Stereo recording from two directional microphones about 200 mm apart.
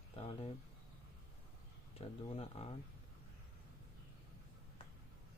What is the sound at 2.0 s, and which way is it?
Speech, 30° left (ahead or behind).